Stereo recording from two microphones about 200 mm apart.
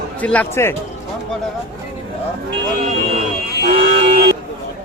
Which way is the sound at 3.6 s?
50° right (ahead or behind).